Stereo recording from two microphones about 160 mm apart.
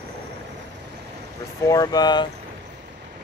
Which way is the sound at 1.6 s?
20° left (ahead or behind).